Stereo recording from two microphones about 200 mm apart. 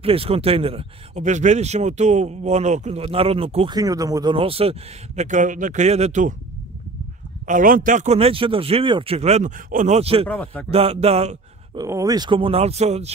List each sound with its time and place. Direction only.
0.0 s speech: 30° right (ahead or behind)
7.4 s speech: 40° right (ahead or behind)
10.2 s speech: 10° left (ahead or behind)
10.7 s speech: 30° right (ahead or behind)
11.8 s speech: 15° right (ahead or behind); by 13.1 s 30° right (ahead or behind)